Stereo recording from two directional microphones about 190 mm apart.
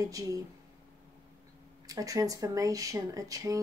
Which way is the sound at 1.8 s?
20° right (ahead or behind).